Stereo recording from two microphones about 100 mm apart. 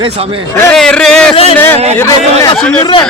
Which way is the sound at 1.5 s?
20° left (ahead or behind).